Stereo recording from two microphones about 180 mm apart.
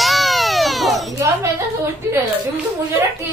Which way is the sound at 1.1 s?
15° right (ahead or behind).